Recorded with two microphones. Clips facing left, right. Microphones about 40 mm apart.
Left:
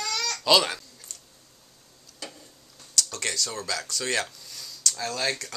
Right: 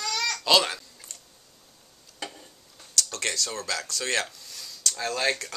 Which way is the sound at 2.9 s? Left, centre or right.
Centre.